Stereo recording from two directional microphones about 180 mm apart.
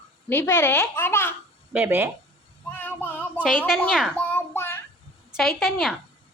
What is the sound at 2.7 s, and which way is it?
A woman's voice, 10° left (ahead or behind).